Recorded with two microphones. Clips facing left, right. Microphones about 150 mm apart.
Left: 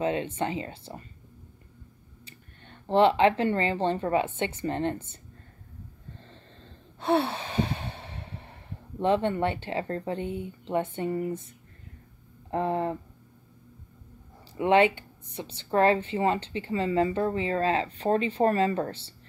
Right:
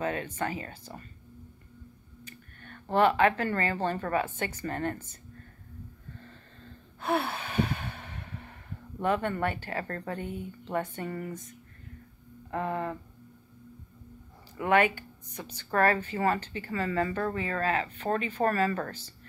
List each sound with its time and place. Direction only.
0.0 s speech: 20° left (ahead or behind)
2.2 s speech: 25° left (ahead or behind)
6.1 s a sound: 30° left (ahead or behind)
9.0 s speech: 25° left (ahead or behind)
12.4 s speech: 30° left (ahead or behind)
14.6 s speech: 25° left (ahead or behind)